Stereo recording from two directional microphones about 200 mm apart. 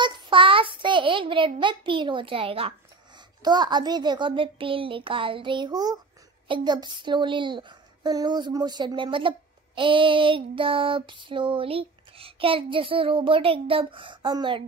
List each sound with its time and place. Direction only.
0.0 s a child's voice: 25° right (ahead or behind)
3.4 s child singing: 20° right (ahead or behind)